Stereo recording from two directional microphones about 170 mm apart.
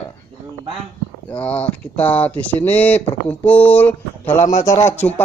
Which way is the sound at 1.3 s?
10° left (ahead or behind).